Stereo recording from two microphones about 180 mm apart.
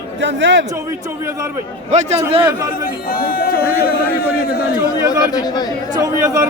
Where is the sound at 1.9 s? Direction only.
40° right (ahead or behind).